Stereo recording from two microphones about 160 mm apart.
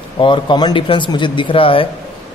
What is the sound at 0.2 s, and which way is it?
A man's voice, 30° left (ahead or behind).